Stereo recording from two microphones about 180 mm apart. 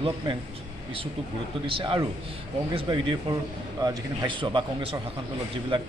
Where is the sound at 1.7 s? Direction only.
30° right (ahead or behind).